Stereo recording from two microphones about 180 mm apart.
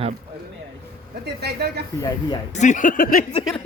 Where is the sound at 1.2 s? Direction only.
65° right (ahead or behind).